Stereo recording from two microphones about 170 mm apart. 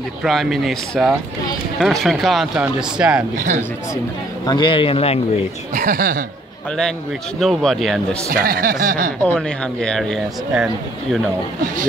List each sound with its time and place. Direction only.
0.2 s speech: centre (ahead or behind)
4.5 s a man's voice: 30° left (ahead or behind)
5.8 s speech: 55° right (ahead or behind)
7.3 s speech: centre (ahead or behind)
8.3 s speech: 60° right (ahead or behind)
9.2 s speech: 5° left (ahead or behind)